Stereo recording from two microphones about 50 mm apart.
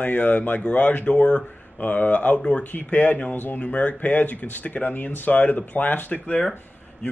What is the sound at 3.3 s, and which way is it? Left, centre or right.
Speech, left.